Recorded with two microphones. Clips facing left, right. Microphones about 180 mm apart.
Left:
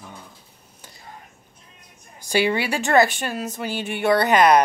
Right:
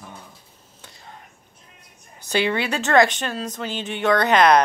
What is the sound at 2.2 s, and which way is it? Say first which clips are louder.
A woman's voice: left 1 dB; 10° left (ahead or behind).